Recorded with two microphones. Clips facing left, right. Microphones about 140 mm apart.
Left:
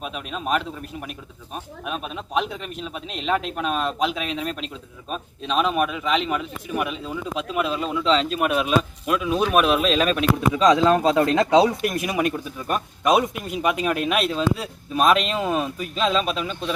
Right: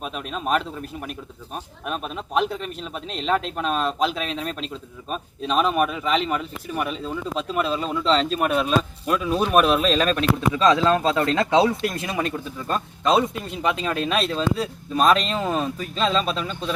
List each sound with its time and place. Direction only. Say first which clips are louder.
0.0 s a man's voice: right 1 dB; centre (ahead or behind)
10.5 s speech: left 2 dB; 15° left (ahead or behind)